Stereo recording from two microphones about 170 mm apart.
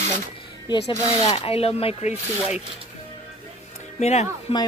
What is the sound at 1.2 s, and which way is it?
Speech, 35° left (ahead or behind).